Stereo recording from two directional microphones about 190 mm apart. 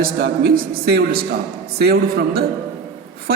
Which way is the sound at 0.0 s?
50° right (ahead or behind).